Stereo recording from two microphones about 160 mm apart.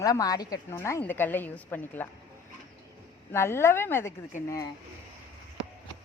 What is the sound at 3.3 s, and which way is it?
Speech, 15° left (ahead or behind).